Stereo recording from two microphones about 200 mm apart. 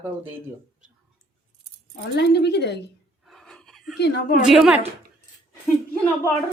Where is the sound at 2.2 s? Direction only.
55° left (ahead or behind).